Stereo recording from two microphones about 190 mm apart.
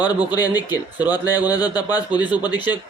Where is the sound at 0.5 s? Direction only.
20° left (ahead or behind).